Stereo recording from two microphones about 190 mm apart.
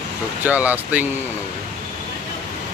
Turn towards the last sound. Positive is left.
turn(degrees=-10)  # may be behind; listen again after turning